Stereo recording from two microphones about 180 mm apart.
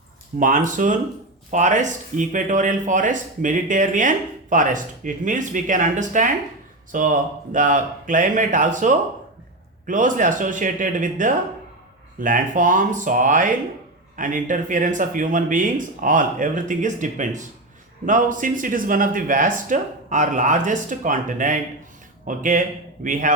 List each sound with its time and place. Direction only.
0.3 s speech: 45° right (ahead or behind)